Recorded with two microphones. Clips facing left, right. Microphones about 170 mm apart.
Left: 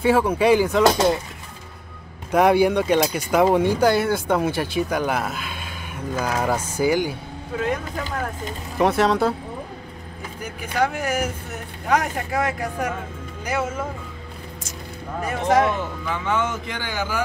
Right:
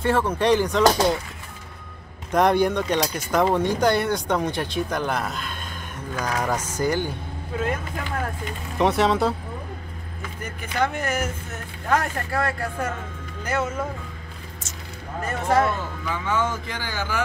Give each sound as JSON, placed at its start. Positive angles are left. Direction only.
{"t": 0.0, "sound": "speech", "side_deg": 10}
{"t": 2.3, "sound": "speech", "side_deg": 5}
{"t": 8.7, "sound": "speech", "side_deg": 0}
{"t": 10.4, "sound": "speech", "side_deg": 10}
{"t": 15.2, "sound": "speech", "side_deg": 15}